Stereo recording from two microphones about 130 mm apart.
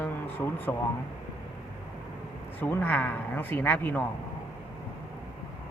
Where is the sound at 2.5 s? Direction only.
15° left (ahead or behind).